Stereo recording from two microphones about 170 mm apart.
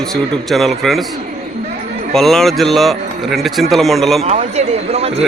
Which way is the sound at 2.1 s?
Centre (ahead or behind).